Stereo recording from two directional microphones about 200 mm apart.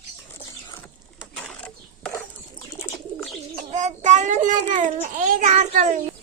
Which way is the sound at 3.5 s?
35° right (ahead or behind).